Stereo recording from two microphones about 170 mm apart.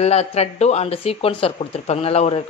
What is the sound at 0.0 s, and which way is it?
Speech, 40° left (ahead or behind).